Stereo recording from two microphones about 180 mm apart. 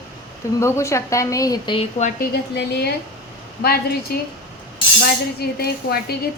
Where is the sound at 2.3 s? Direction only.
60° left (ahead or behind).